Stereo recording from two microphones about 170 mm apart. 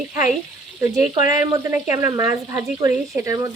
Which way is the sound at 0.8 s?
20° right (ahead or behind).